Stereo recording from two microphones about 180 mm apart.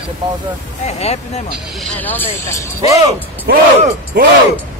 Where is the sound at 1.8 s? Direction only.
10° left (ahead or behind).